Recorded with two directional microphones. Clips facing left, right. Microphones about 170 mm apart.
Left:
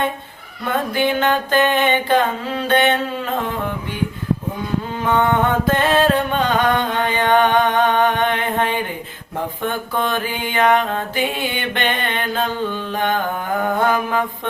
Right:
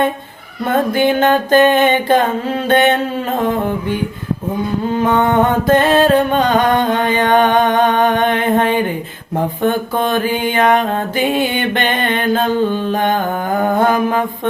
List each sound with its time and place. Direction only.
0.6 s music: 45° right (ahead or behind)
5.0 s music: 40° right (ahead or behind)
13.6 s mantra: 40° right (ahead or behind)